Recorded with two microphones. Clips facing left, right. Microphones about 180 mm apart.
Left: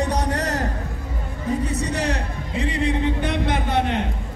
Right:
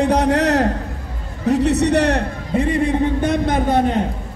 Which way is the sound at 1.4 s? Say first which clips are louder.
Right 9 dB; 75° right (ahead or behind).